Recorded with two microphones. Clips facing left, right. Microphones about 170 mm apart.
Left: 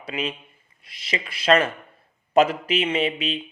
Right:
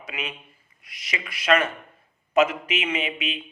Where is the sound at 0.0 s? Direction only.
30° left (ahead or behind).